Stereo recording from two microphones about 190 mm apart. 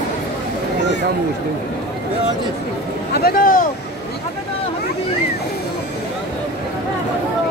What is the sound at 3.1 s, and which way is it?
Speech, 50° left (ahead or behind).